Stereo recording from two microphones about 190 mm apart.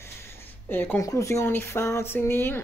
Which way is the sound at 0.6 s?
10° left (ahead or behind).